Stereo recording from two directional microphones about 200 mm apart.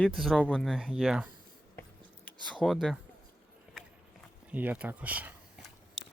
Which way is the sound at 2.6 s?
Centre (ahead or behind).